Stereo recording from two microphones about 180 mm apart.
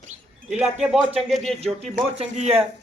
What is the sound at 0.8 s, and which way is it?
A man's voice, 5° right (ahead or behind).